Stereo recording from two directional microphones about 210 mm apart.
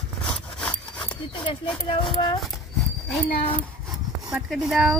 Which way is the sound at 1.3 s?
20° left (ahead or behind).